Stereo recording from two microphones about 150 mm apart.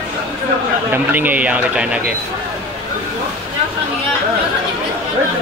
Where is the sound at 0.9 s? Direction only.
10° right (ahead or behind).